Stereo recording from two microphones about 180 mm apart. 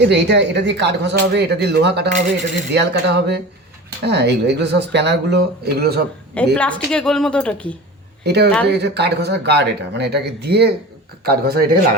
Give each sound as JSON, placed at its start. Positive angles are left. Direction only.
{"t": 0.1, "sound": "speech", "side_deg": -70}
{"t": 6.3, "sound": "a woman's voice", "side_deg": 5}
{"t": 8.2, "sound": "speech", "side_deg": -65}